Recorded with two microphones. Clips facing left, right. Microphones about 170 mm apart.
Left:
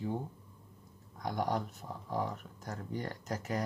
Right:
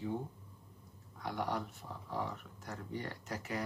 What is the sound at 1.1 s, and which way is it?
Speech, 40° left (ahead or behind).